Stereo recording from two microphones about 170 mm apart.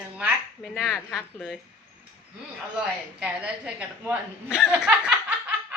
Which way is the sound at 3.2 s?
5° right (ahead or behind).